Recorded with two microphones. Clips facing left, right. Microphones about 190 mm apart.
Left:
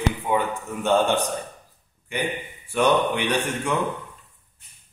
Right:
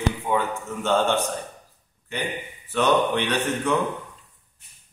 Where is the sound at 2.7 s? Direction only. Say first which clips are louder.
Even; 10° left (ahead or behind).